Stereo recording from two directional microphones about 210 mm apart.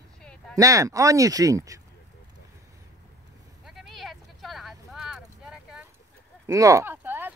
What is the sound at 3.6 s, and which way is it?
Vehicle, centre (ahead or behind).